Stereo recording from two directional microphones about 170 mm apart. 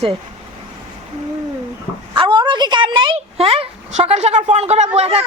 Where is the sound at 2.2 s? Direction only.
30° right (ahead or behind).